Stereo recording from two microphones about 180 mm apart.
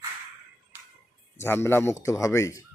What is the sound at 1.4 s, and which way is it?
Speech, 15° left (ahead or behind).